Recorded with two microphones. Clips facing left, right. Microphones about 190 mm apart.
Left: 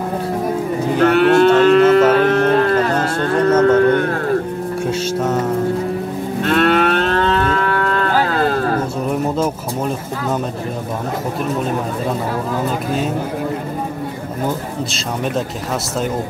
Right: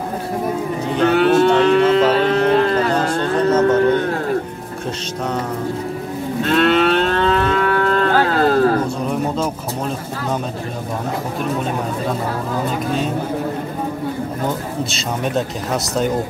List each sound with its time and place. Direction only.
1.0 s moo: 65° left (ahead or behind)
3.6 s a sound: 55° left (ahead or behind)
6.5 s moo: 50° left (ahead or behind)
7.4 s moo: 35° right (ahead or behind)